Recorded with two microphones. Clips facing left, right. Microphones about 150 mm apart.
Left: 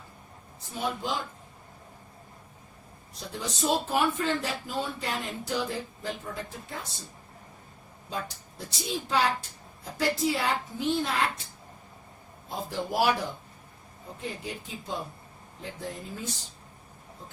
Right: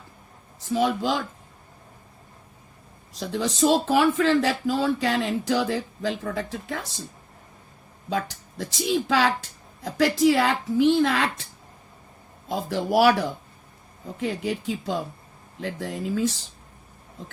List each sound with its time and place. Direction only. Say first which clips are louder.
0.7 s speech: right 9 dB; 90° right
3.2 s speech: right 10 dB; 90° right
8.1 s speech: right 8 dB; 90° right
12.5 s speech: right 7 dB; 90° right